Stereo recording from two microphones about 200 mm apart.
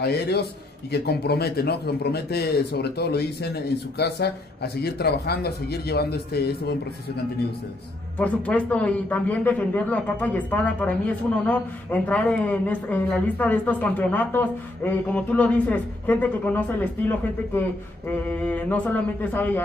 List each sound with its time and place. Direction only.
0.0 s speech: 55° left (ahead or behind)
8.2 s a man's voice: 5° left (ahead or behind)